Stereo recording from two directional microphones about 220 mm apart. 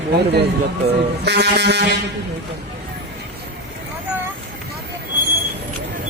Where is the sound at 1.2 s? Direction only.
50° right (ahead or behind).